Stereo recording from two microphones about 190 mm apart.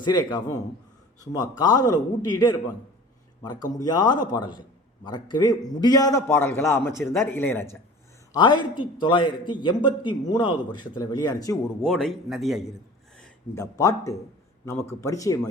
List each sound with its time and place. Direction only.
0.0 s a man's voice: 20° left (ahead or behind)
8.3 s a man's voice: 25° left (ahead or behind)
11.8 s a man's voice: centre (ahead or behind)
13.6 s a man's voice: 15° left (ahead or behind)